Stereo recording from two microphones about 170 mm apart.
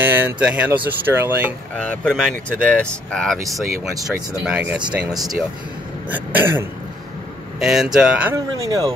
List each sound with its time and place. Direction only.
0.0 s speech: 10° right (ahead or behind)
1.8 s speech: 5° left (ahead or behind)
4.5 s speech: 5° right (ahead or behind)
6.0 s speech: 10° right (ahead or behind)
8.6 s speech: 20° right (ahead or behind)